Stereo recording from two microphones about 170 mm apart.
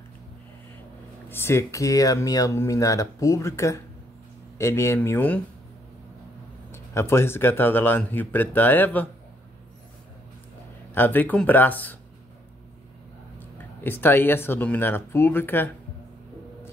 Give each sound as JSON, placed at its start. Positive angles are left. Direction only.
{"t": 1.3, "sound": "speech", "side_deg": 15}
{"t": 6.7, "sound": "speech", "side_deg": 15}
{"t": 11.0, "sound": "speech", "side_deg": 10}
{"t": 13.6, "sound": "speech", "side_deg": 10}